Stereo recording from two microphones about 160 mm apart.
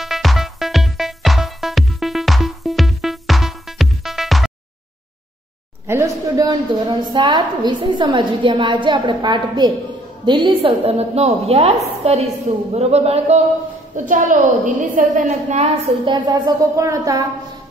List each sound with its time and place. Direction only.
0.0 s music: centre (ahead or behind)
5.9 s a woman's voice: 20° right (ahead or behind); by 13.4 s 40° right (ahead or behind)
13.9 s a woman's voice: 55° right (ahead or behind)
16.1 s a woman's voice: 25° right (ahead or behind)